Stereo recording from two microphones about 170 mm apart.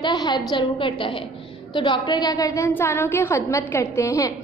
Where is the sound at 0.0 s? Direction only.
25° left (ahead or behind).